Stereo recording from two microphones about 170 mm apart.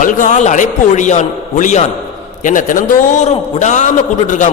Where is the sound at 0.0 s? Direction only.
50° left (ahead or behind).